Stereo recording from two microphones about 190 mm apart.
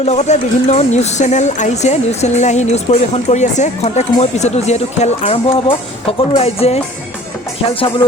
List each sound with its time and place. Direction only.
0.0 s speech: 35° left (ahead or behind)